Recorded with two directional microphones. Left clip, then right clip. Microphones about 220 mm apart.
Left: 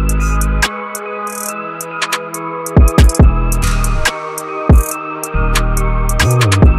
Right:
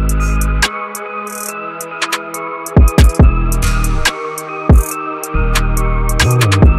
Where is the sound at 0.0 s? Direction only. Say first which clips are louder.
Left 1 dB; centre (ahead or behind).